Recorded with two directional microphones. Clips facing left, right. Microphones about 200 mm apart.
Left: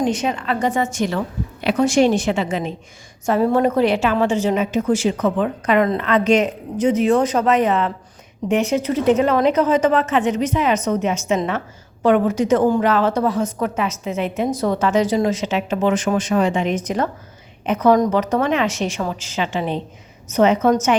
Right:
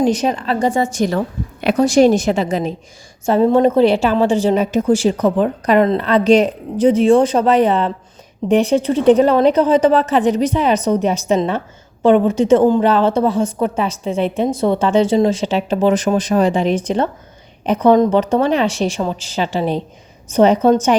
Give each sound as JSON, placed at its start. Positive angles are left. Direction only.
{"t": 0.0, "sound": "a woman's voice", "side_deg": -35}
{"t": 3.2, "sound": "a woman's voice", "side_deg": -25}